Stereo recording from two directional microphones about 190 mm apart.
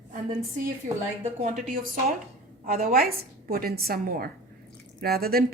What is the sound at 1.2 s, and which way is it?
Speech, 40° right (ahead or behind).